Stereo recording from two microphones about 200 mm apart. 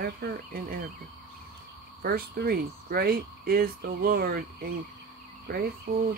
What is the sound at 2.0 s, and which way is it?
Speech, 50° right (ahead or behind).